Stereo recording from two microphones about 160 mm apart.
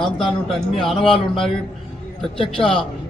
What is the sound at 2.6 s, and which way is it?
Speech, 35° left (ahead or behind).